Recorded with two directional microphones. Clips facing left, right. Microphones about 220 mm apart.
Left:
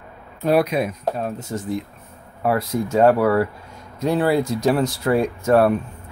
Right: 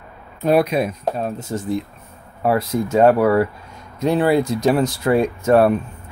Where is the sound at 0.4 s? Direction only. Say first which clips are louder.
Right 2 dB; 20° right (ahead or behind).